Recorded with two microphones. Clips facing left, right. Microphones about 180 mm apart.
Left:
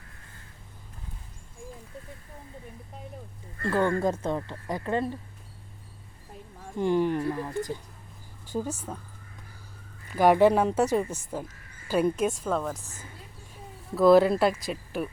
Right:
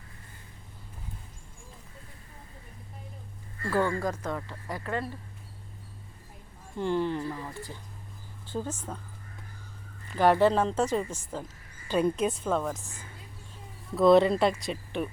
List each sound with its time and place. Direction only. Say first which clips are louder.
3.7 s speech: left 3 dB; 20° left (ahead or behind)
6.7 s speech: left 4 dB; 15° left (ahead or behind)
10.1 s speech: left 3 dB; 10° left (ahead or behind)
13.9 s speech: left 1 dB; 5° left (ahead or behind)